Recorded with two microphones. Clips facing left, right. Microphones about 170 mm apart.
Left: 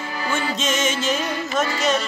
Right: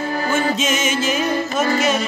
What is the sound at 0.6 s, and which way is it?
Music, 5° right (ahead or behind).